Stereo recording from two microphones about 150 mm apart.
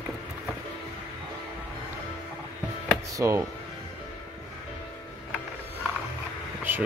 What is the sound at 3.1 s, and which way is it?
Speech, 20° right (ahead or behind).